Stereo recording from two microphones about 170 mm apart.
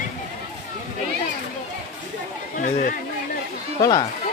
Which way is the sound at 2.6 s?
45° left (ahead or behind).